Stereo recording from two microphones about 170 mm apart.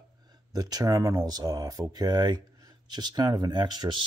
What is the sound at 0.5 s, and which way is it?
Speech, 20° right (ahead or behind).